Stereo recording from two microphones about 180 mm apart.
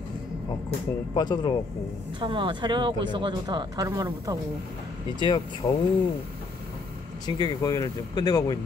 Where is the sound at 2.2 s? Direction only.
25° right (ahead or behind).